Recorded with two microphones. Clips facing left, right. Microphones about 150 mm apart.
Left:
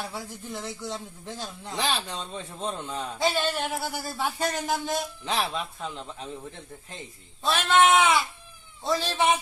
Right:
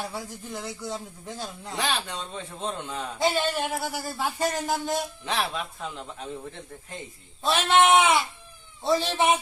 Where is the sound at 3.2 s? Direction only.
20° right (ahead or behind).